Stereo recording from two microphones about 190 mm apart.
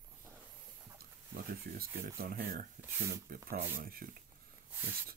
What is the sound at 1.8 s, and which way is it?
Speech, 50° right (ahead or behind).